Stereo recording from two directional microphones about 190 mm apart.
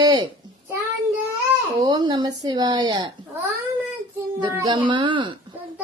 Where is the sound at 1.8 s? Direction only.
20° right (ahead or behind).